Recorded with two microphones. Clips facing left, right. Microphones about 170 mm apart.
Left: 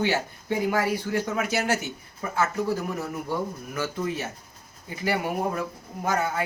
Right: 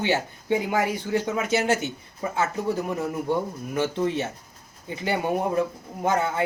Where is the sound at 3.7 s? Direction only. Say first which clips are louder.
Right 5 dB; 25° right (ahead or behind).